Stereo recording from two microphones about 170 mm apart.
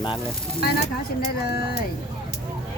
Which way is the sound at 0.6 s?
65° left (ahead or behind).